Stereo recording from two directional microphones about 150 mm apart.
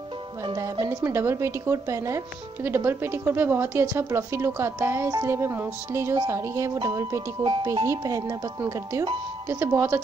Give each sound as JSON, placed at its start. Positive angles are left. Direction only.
{"t": 0.6, "sound": "speech", "side_deg": -20}